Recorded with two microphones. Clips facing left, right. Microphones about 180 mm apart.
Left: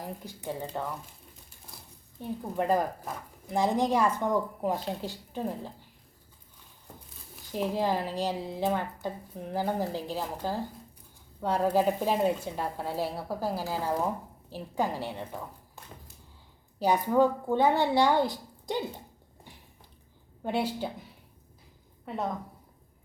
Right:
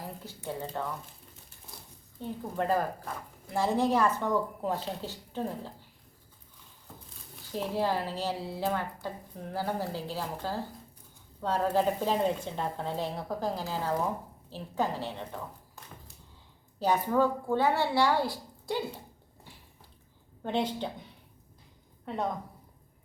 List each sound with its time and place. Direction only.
0.3 s a woman's voice: 15° left (ahead or behind)
2.2 s a woman's voice: 15° left (ahead or behind)
7.5 s a woman's voice: 15° left (ahead or behind)
16.8 s speech: 15° left (ahead or behind)
20.4 s a woman's voice: 10° left (ahead or behind)